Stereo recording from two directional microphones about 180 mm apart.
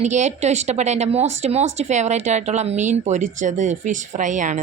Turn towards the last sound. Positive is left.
turn(degrees=-45)  # may be behind; listen again after turning